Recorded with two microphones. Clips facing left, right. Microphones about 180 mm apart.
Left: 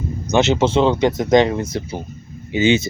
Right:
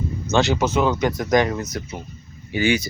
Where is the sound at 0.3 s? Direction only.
20° left (ahead or behind).